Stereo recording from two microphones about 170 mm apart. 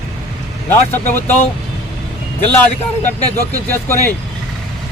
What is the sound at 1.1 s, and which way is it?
Speech, 10° left (ahead or behind).